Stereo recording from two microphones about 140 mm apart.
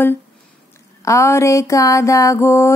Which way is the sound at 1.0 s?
20° left (ahead or behind).